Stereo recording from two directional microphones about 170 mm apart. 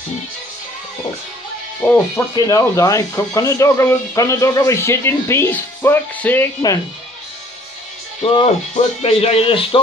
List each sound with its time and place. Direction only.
2.1 s speech: 20° left (ahead or behind)
8.2 s speech: 35° left (ahead or behind)